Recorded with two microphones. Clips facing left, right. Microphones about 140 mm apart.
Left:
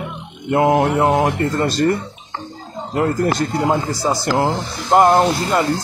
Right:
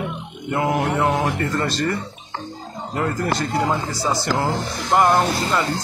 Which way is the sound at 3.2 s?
40° left (ahead or behind).